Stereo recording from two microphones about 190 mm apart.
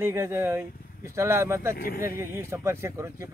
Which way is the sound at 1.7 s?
50° left (ahead or behind).